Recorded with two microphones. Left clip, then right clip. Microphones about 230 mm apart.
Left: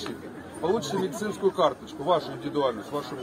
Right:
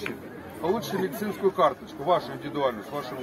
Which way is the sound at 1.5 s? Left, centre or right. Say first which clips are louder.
Right 1 dB; centre.